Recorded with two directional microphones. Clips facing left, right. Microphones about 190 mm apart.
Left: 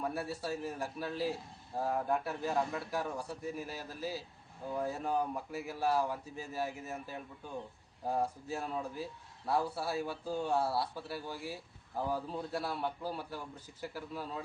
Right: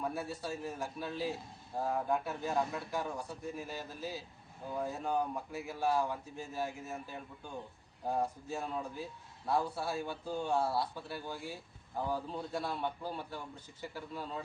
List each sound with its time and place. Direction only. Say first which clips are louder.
0.0 s a man's voice: left 1 dB; centre (ahead or behind)